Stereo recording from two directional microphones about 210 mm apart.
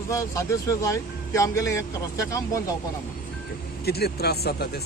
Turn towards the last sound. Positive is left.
turn(degrees=50)  # may be behind; listen again after turning